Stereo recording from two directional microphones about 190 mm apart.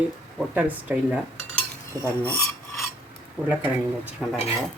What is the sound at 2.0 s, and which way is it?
Speech, 15° right (ahead or behind).